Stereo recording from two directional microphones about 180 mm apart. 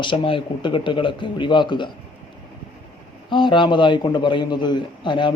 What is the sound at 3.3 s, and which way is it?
A man's voice, 25° left (ahead or behind).